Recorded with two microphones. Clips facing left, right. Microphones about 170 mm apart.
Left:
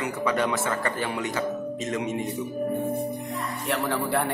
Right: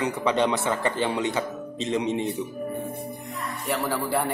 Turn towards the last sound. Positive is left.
turn(degrees=0)  # may be behind; listen again after turning